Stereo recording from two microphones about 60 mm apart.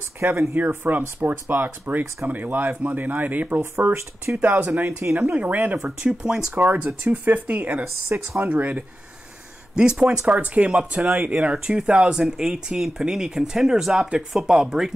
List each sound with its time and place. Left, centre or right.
0.2 s speech: right
0.6 s speech: right
5.9 s speech: centre